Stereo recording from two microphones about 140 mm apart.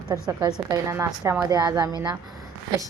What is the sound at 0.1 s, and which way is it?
A woman's voice, 25° right (ahead or behind).